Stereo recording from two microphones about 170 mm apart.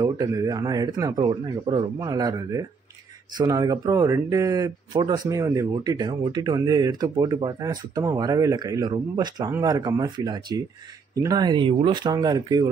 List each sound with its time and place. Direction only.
0.0 s speech: 20° right (ahead or behind)